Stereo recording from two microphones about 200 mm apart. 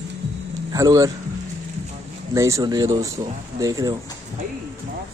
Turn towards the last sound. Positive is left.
turn(degrees=-15)  # may be behind; listen again after turning